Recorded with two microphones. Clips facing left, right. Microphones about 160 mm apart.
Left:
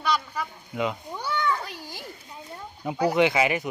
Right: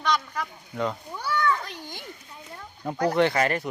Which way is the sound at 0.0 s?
5° left (ahead or behind).